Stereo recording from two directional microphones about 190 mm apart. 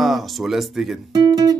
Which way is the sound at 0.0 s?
Centre (ahead or behind).